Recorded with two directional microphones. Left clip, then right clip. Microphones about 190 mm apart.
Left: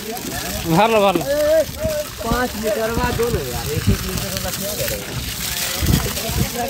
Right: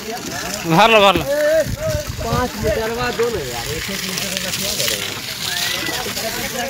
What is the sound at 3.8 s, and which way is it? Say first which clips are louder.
Speech: right 2 dB; 45° left (ahead or behind).